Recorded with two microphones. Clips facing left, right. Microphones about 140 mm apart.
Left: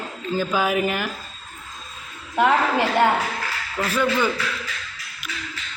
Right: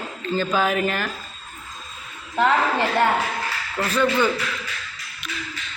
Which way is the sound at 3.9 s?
5° left (ahead or behind).